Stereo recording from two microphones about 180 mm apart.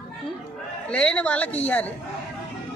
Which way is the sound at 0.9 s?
5° left (ahead or behind).